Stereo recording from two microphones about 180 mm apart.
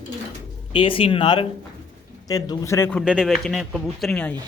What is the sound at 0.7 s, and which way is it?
Speech, 30° left (ahead or behind).